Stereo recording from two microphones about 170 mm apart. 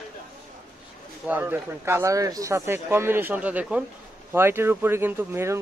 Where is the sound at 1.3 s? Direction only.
10° right (ahead or behind).